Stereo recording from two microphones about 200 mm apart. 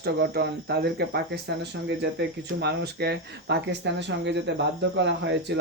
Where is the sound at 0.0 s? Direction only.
55° right (ahead or behind).